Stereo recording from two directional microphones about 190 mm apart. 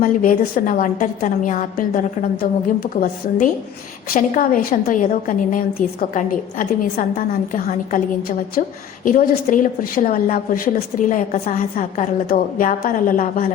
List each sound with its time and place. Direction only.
0.0 s a woman's voice: 45° left (ahead or behind)